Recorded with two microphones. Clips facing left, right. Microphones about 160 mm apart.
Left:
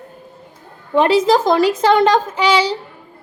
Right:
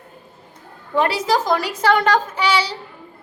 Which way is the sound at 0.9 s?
20° left (ahead or behind).